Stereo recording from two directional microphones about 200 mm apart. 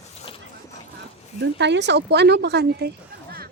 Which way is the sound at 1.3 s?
60° right (ahead or behind).